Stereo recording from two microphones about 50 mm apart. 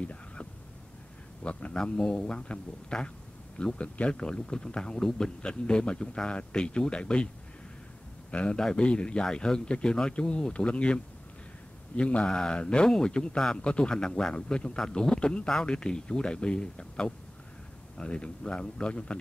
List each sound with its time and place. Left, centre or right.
0.0 s a sound: left
1.4 s speech: left
8.3 s a man's voice: left